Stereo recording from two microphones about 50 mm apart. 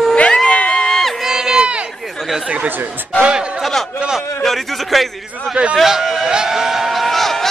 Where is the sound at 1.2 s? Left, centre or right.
Centre.